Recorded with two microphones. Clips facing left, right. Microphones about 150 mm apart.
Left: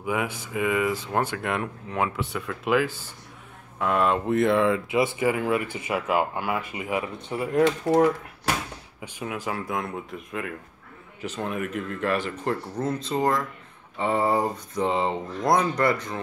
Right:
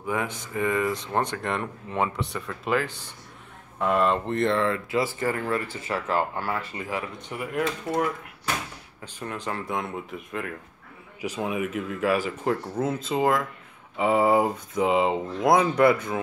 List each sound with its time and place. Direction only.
0.0 s speech: 10° left (ahead or behind); by 8.1 s 30° left (ahead or behind)
9.0 s speech: 5° left (ahead or behind)